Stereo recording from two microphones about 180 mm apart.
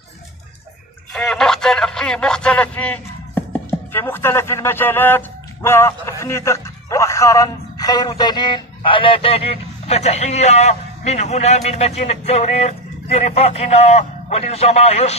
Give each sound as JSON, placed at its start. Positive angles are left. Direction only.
{"t": 1.1, "sound": "a man's voice", "side_deg": 5}